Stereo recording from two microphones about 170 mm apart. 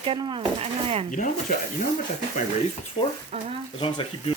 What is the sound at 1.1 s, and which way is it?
Speech, 50° left (ahead or behind).